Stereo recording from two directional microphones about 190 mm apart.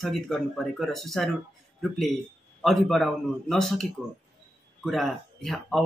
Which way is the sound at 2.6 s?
Centre (ahead or behind).